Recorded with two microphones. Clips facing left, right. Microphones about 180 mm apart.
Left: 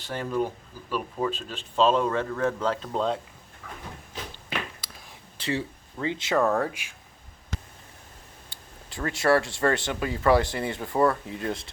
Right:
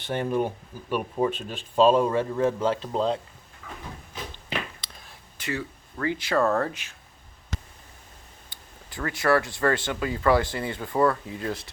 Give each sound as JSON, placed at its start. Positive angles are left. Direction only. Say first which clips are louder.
{"t": 0.1, "sound": "speech", "louder": "right 2 dB", "side_deg": -20}
{"t": 2.9, "sound": "speech", "louder": "even", "side_deg": 0}
{"t": 5.4, "sound": "speech", "louder": "left 2 dB", "side_deg": 30}
{"t": 8.4, "sound": "speech", "louder": "left 1 dB", "side_deg": 25}